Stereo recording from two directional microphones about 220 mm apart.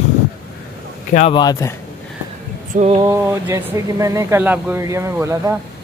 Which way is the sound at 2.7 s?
30° right (ahead or behind).